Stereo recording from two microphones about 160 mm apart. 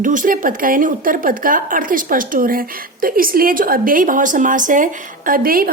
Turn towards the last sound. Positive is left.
turn(degrees=-65)  # may be behind; listen again after turning